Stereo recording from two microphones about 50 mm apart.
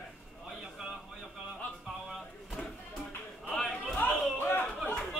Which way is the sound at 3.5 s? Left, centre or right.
Centre.